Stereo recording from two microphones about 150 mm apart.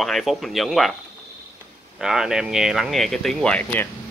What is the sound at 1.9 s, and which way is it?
Speech, 5° right (ahead or behind).